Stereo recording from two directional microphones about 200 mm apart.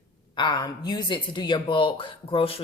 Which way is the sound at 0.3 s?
20° left (ahead or behind).